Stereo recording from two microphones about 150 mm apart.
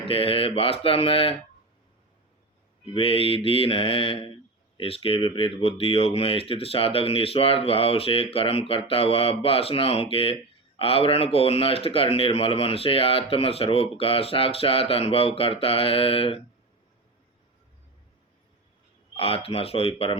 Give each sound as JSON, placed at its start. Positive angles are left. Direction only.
{"t": 0.0, "sound": "speech", "side_deg": 40}
{"t": 2.8, "sound": "speech", "side_deg": 40}
{"t": 19.1, "sound": "speech", "side_deg": 40}